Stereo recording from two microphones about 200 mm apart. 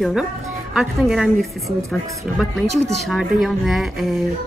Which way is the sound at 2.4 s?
Centre (ahead or behind).